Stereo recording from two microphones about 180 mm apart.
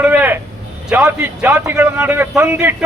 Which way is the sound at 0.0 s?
10° right (ahead or behind).